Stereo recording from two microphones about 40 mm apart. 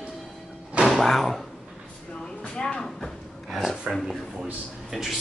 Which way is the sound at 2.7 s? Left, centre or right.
Centre.